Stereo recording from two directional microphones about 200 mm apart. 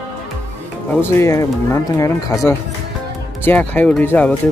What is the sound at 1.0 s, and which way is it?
Speech, 15° left (ahead or behind).